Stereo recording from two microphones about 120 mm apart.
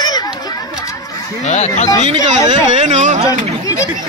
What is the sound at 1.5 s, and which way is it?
Speech, 70° left (ahead or behind).